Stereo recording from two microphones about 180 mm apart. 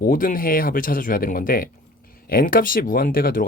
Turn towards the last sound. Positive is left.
turn(degrees=55)  # may be behind; listen again after turning